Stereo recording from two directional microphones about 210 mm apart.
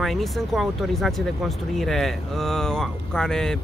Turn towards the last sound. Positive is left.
turn(degrees=5)  # may be behind; listen again after turning